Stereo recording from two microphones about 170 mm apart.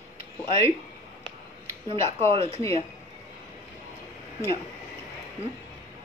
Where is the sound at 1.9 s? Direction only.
35° right (ahead or behind).